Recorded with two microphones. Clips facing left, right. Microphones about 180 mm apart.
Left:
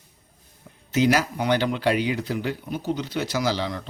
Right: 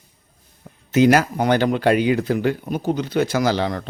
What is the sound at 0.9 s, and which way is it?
Speech, 55° right (ahead or behind).